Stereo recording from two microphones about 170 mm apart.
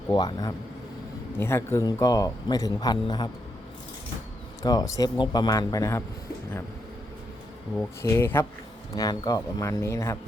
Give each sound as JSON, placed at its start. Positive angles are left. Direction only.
{"t": 0.1, "sound": "a man's voice", "side_deg": 25}
{"t": 4.6, "sound": "a man's voice", "side_deg": 20}
{"t": 7.8, "sound": "a man's voice", "side_deg": 15}